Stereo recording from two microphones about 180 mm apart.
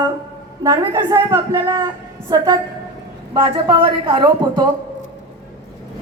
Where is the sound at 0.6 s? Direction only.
20° right (ahead or behind).